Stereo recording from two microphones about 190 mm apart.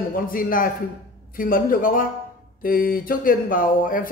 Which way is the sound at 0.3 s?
50° left (ahead or behind).